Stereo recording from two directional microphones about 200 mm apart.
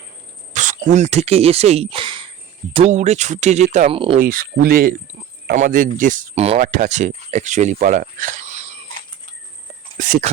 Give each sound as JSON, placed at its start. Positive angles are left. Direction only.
{"t": 0.5, "sound": "speech", "side_deg": -40}
{"t": 4.2, "sound": "speech", "side_deg": -45}
{"t": 10.0, "sound": "speech", "side_deg": -40}